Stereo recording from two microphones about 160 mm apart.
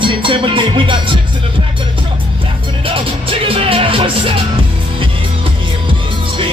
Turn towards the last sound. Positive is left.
turn(degrees=-30)  # may be behind; listen again after turning